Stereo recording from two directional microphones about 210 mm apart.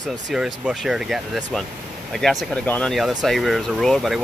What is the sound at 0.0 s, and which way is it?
Speech, centre (ahead or behind).